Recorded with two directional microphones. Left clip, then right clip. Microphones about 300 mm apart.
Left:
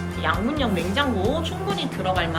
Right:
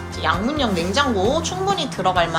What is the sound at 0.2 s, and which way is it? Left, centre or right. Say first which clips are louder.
Speech: right 4 dB; centre.